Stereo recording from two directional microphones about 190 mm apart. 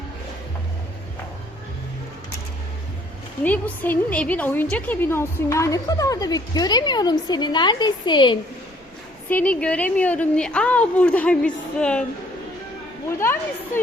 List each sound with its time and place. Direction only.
3.4 s a woman's voice: 10° left (ahead or behind); by 8.4 s 25° left (ahead or behind)
9.3 s a woman's voice: 5° left (ahead or behind)